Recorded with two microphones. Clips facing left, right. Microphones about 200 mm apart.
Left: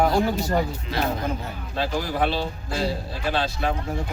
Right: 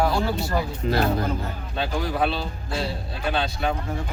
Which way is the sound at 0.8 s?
45° right (ahead or behind).